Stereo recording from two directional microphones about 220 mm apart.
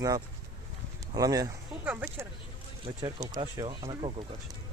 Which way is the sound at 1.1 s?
15° right (ahead or behind).